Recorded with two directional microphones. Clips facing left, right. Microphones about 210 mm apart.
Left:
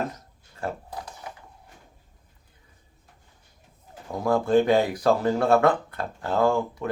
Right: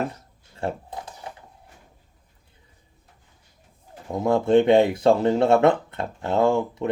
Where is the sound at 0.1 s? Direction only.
25° right (ahead or behind).